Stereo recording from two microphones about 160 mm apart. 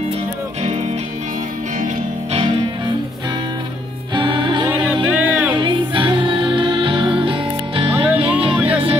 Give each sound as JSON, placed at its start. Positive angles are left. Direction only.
{"t": 4.1, "sound": "music", "side_deg": -30}
{"t": 5.0, "sound": "music", "side_deg": -10}
{"t": 5.6, "sound": "music", "side_deg": -30}
{"t": 7.9, "sound": "music", "side_deg": -10}